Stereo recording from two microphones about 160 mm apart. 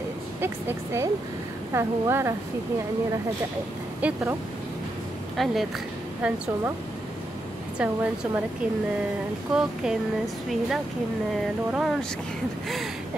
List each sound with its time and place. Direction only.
0.4 s a woman's voice: 15° right (ahead or behind)
4.0 s a woman's voice: 15° right (ahead or behind)
5.4 s a woman's voice: centre (ahead or behind)
7.8 s a woman's voice: 10° right (ahead or behind)
9.5 s speech: 5° right (ahead or behind)